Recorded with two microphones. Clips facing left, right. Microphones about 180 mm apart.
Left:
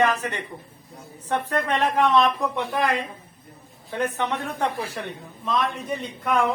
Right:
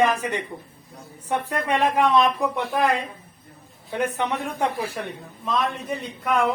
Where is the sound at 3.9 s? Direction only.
10° right (ahead or behind).